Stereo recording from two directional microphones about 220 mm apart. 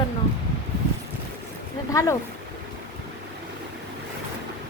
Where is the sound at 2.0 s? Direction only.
15° left (ahead or behind).